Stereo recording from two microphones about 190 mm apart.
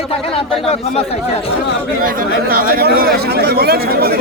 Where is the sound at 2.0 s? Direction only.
50° right (ahead or behind).